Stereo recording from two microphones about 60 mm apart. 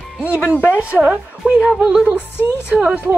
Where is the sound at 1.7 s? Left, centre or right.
Centre.